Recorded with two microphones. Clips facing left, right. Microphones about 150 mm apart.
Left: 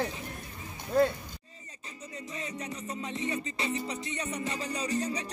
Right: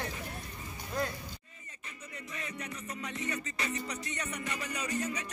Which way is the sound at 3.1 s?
25° left (ahead or behind).